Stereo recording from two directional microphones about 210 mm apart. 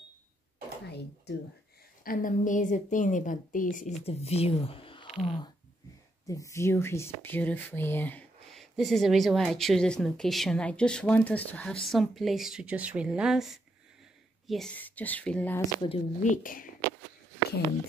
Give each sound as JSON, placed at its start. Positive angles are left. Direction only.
{"t": 2.0, "sound": "a woman's voice", "side_deg": 40}
{"t": 6.2, "sound": "speech", "side_deg": 15}
{"t": 15.8, "sound": "a woman's voice", "side_deg": 30}